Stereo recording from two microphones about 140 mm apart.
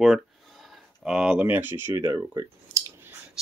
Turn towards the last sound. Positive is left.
turn(degrees=-20)  # may be behind; listen again after turning